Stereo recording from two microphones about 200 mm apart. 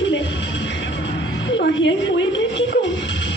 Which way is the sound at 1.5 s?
65° left (ahead or behind).